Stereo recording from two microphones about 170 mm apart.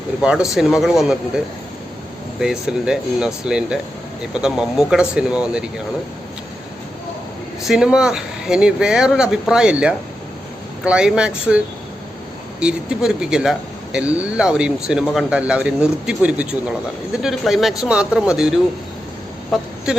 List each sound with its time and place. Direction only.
0.2 s speech: 5° right (ahead or behind)
2.4 s speech: 5° right (ahead or behind)
7.7 s speech: 5° right (ahead or behind)
19.5 s a sound: 5° right (ahead or behind)